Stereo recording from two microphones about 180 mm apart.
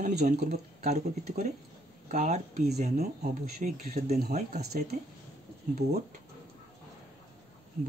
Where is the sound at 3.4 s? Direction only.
55° right (ahead or behind).